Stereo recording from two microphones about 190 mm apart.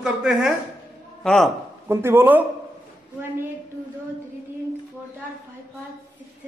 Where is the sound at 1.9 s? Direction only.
15° right (ahead or behind).